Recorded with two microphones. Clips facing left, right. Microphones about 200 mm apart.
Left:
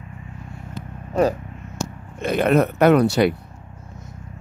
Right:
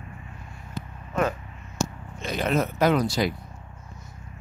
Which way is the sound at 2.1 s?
60° left (ahead or behind).